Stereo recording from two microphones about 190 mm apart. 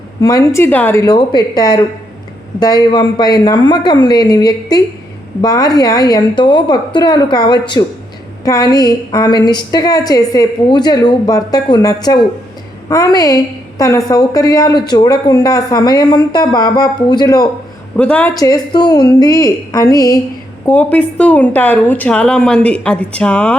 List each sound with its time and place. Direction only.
0.2 s a woman's voice: 20° left (ahead or behind)
17.9 s speech: 5° left (ahead or behind)
18.3 s a woman's voice: 20° left (ahead or behind)